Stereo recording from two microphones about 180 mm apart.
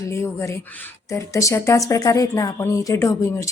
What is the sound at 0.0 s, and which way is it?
A woman's voice, 15° left (ahead or behind).